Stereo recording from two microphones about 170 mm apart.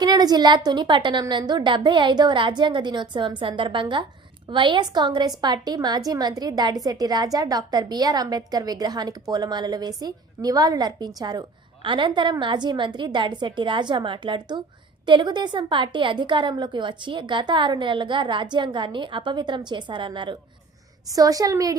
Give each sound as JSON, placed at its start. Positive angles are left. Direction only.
{"t": 0.0, "sound": "a woman's voice", "side_deg": -25}